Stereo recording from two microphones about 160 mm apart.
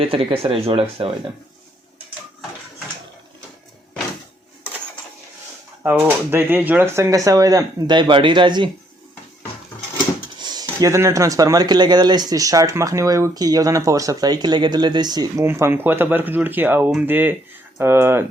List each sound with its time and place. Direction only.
0.0 s speech: 35° right (ahead or behind)
6.0 s speech: 10° right (ahead or behind); by 8.7 s 30° right (ahead or behind)
10.4 s speech: 25° right (ahead or behind)